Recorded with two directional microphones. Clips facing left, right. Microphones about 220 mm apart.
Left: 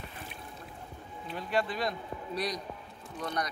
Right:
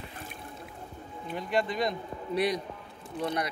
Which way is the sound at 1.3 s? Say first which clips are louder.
Right 2 dB; 15° right (ahead or behind).